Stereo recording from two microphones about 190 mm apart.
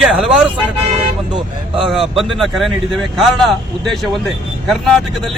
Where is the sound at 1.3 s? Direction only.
25° right (ahead or behind).